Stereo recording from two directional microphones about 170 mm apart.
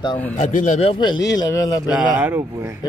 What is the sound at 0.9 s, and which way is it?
Speech, 25° left (ahead or behind).